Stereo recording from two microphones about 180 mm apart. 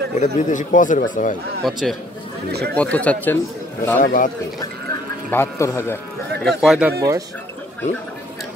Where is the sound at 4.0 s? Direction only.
50° left (ahead or behind).